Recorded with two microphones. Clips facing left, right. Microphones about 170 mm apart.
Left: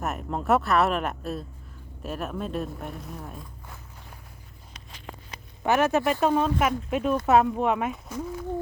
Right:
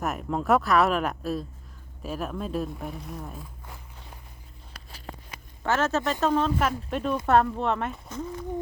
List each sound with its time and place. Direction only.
0.0 s speech: centre (ahead or behind)
5.3 s a sound: 15° left (ahead or behind)
6.1 s speech: 10° left (ahead or behind)